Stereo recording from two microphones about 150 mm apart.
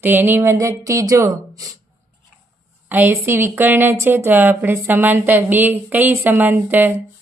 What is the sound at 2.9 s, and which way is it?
A woman's voice, 15° right (ahead or behind).